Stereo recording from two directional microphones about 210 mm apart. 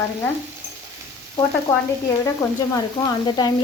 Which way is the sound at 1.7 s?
15° left (ahead or behind).